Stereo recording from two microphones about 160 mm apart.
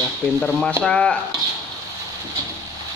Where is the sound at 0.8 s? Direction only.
5° left (ahead or behind).